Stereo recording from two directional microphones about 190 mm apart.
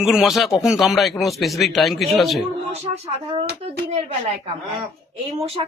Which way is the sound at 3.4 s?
60° right (ahead or behind).